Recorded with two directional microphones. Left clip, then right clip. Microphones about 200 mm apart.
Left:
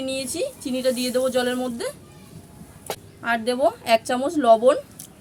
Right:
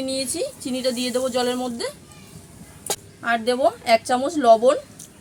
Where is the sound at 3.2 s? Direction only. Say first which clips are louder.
Right 1 dB; 10° left (ahead or behind).